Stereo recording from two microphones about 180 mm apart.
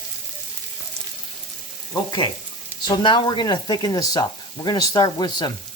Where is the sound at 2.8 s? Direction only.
25° left (ahead or behind).